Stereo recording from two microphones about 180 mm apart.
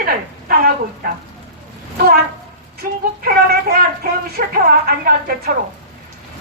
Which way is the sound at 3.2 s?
55° right (ahead or behind).